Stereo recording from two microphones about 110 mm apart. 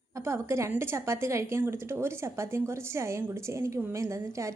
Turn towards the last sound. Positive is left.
turn(degrees=-25)  # may be behind; listen again after turning